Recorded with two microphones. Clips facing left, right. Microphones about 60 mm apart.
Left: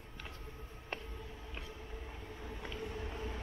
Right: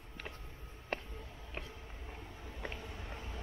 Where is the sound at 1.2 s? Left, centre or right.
Centre.